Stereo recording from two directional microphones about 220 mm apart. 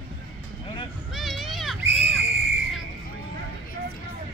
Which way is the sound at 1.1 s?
Centre (ahead or behind).